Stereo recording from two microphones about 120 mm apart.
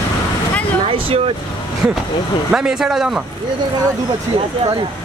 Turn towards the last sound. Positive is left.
turn(degrees=-5)  # may be behind; listen again after turning